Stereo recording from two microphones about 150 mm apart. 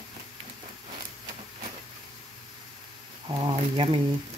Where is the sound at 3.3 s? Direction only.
35° right (ahead or behind).